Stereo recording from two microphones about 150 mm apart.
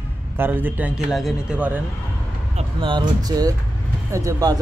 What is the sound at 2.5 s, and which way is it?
Speech, 35° right (ahead or behind).